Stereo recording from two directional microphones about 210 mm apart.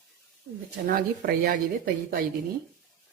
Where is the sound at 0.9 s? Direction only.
45° right (ahead or behind).